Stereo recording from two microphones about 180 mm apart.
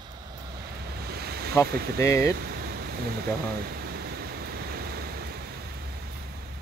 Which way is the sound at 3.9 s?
60° right (ahead or behind).